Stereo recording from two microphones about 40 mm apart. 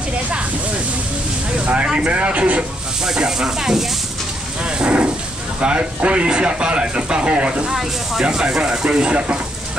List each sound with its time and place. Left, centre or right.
2.0 s speech: right
3.0 s speech: centre
4.6 s a sound: right
5.6 s speech: right
7.7 s speech: centre